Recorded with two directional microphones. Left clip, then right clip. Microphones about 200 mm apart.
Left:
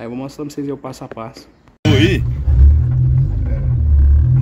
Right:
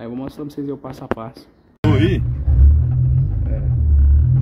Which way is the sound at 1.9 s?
25° left (ahead or behind).